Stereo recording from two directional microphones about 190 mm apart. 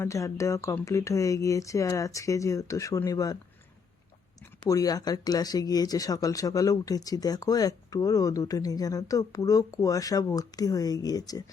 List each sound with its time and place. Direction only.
0.0 s speech: 15° left (ahead or behind)
4.6 s speech: 20° left (ahead or behind)